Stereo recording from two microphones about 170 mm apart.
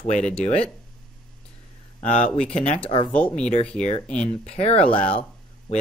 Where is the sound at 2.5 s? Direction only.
40° left (ahead or behind).